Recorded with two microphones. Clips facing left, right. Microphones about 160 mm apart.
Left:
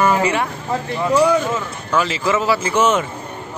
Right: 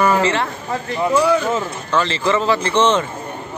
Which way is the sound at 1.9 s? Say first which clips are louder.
Even; 10° left (ahead or behind).